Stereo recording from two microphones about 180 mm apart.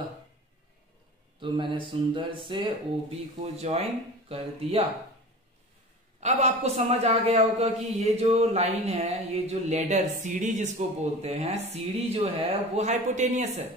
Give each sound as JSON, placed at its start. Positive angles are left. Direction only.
{"t": 1.4, "sound": "a man's voice", "side_deg": -30}
{"t": 6.2, "sound": "a man's voice", "side_deg": -40}